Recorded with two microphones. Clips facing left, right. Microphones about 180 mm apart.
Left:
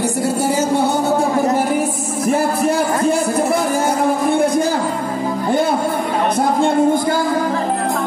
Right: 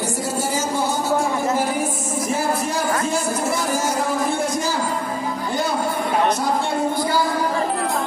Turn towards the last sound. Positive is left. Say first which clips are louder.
# left 6 dB
turn(degrees=50)  # may be behind; listen again after turning